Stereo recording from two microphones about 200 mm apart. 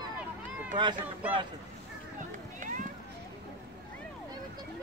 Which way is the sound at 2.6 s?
40° right (ahead or behind).